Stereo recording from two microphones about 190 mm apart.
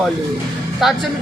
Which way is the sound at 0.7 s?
Centre (ahead or behind).